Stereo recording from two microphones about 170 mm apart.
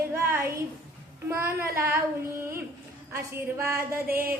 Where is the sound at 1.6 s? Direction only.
15° right (ahead or behind).